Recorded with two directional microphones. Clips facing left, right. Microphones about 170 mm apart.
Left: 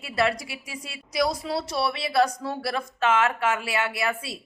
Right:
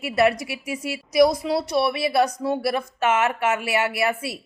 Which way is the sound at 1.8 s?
20° right (ahead or behind).